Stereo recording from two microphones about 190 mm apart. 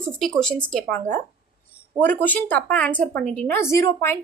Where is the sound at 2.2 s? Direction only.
10° left (ahead or behind).